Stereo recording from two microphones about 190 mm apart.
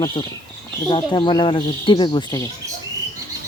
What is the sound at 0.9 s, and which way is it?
A child's voice, 25° left (ahead or behind).